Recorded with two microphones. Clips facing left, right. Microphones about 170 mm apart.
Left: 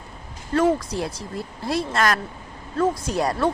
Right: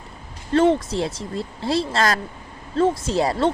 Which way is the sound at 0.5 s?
25° right (ahead or behind).